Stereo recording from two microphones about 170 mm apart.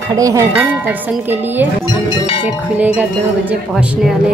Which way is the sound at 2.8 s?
5° right (ahead or behind).